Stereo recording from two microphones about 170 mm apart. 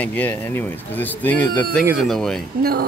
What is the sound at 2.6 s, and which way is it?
Speech, 65° right (ahead or behind).